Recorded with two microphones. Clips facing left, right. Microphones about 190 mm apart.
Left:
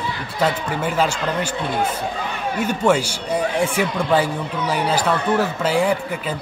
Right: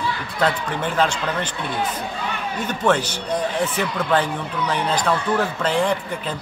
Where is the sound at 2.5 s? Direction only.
10° left (ahead or behind).